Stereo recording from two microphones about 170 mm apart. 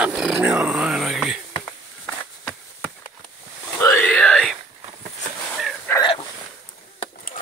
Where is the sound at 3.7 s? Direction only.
15° left (ahead or behind).